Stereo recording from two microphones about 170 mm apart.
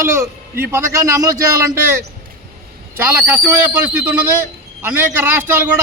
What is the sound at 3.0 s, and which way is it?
A man's voice, 15° right (ahead or behind).